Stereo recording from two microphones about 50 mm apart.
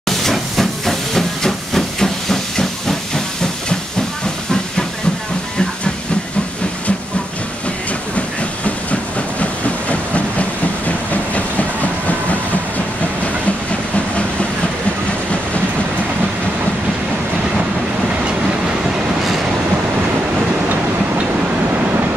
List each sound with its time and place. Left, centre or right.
0.2 s steam: centre
9.4 s train: left